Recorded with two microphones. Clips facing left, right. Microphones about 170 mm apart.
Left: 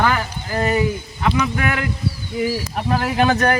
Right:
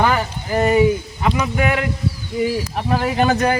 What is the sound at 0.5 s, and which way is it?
A man's voice, 15° right (ahead or behind).